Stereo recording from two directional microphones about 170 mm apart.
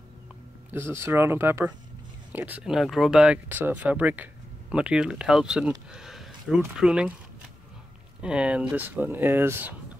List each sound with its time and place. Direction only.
0.7 s speech: 15° right (ahead or behind)
8.2 s speech: 5° right (ahead or behind)